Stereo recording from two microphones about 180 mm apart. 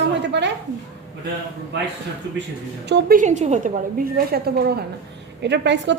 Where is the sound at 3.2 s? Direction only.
40° right (ahead or behind); by 4.8 s 60° right (ahead or behind).